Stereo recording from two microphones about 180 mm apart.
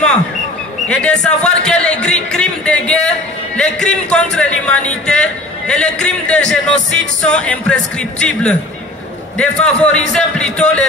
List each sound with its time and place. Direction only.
0.8 s a man's voice: 5° left (ahead or behind)